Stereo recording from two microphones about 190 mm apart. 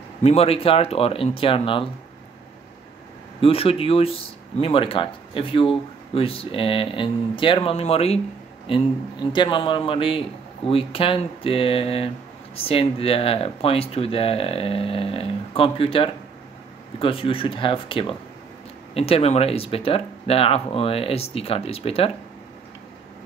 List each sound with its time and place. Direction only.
0.2 s speech: 35° left (ahead or behind)
3.3 s speech: 30° left (ahead or behind)